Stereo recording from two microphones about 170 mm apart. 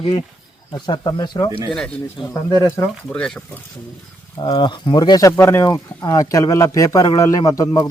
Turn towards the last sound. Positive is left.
turn(degrees=20)  # may be behind; listen again after turning